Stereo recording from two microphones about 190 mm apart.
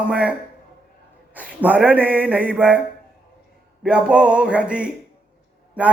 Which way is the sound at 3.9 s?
5° right (ahead or behind).